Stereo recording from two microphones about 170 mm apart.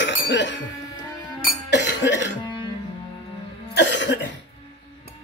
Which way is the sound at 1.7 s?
90° left.